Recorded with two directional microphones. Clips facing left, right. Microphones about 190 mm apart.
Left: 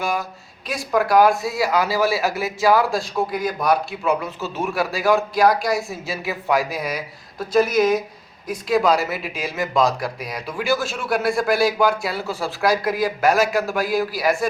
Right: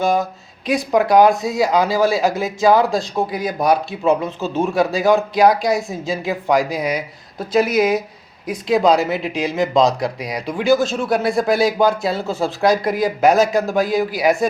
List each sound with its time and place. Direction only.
0.0 s speech: 20° right (ahead or behind)
4.4 s speech: 15° right (ahead or behind)
8.7 s speech: 20° right (ahead or behind)